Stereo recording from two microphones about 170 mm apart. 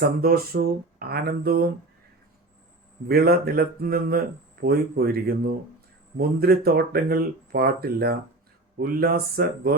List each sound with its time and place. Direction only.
0.0 s speech: 60° right (ahead or behind)
3.1 s speech: 65° right (ahead or behind)